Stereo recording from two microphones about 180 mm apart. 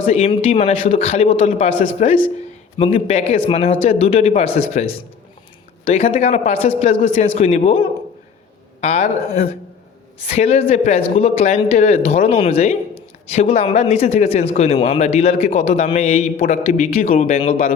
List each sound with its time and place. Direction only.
0.0 s speech: 35° left (ahead or behind)
16.9 s speech: 55° left (ahead or behind)
17.2 s speech: 35° left (ahead or behind)
17.5 s speech: 50° left (ahead or behind)